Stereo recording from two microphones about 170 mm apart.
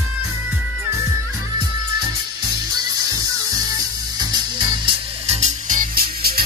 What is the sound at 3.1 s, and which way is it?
Music, 20° right (ahead or behind).